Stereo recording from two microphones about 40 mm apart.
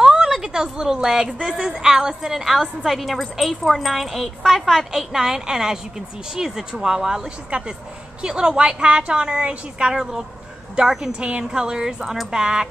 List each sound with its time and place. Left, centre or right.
0.0 s a sound: centre
1.0 s a woman's voice: centre
7.5 s speech: right
8.2 s a woman's voice: centre
9.8 s a woman's voice: centre